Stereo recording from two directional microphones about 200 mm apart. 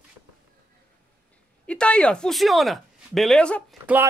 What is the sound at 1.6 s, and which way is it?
Speech, 5° left (ahead or behind).